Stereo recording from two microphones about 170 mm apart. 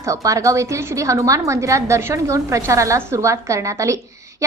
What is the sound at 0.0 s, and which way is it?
A woman's voice, 20° right (ahead or behind).